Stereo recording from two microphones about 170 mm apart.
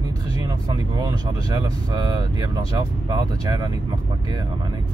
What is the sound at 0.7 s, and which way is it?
Speech, 25° right (ahead or behind).